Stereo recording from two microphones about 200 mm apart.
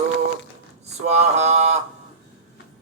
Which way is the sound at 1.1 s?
35° right (ahead or behind).